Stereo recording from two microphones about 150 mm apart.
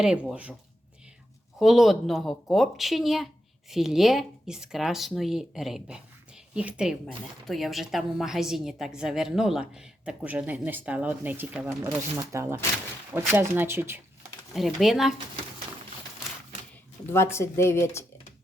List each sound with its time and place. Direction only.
0.0 s speech: 5° right (ahead or behind)
1.5 s speech: centre (ahead or behind)
12.1 s speech: 20° right (ahead or behind)
14.5 s speech: centre (ahead or behind)
17.1 s speech: 15° left (ahead or behind)